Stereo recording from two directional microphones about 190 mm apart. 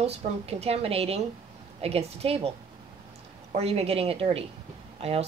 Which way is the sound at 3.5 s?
35° right (ahead or behind).